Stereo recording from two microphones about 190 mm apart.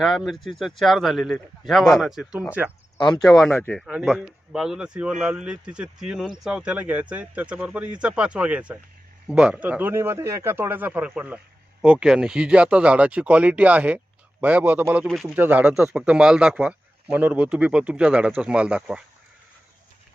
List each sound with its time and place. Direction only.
0.0 s a man's voice: centre (ahead or behind)
3.0 s speech: 25° left (ahead or behind)
3.2 s a man's voice: centre (ahead or behind)
3.5 s speech: 15° left (ahead or behind)
3.8 s a man's voice: 5° right (ahead or behind)